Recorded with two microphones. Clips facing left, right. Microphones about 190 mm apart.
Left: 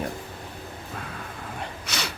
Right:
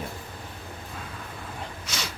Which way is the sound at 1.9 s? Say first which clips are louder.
Left 3 dB; 65° left (ahead or behind).